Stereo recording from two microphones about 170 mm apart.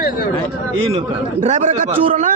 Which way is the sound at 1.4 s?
45° right (ahead or behind).